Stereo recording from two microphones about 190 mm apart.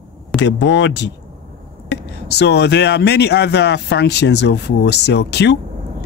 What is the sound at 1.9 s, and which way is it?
Speech, 60° left (ahead or behind).